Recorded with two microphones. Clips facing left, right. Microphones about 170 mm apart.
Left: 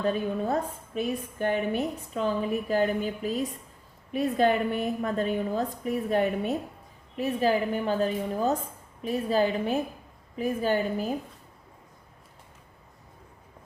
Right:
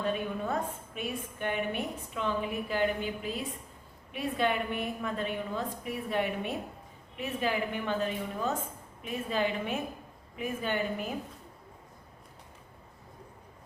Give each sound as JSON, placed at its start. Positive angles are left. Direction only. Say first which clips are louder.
{"t": 0.0, "sound": "a woman's voice", "louder": "left 5 dB", "side_deg": 35}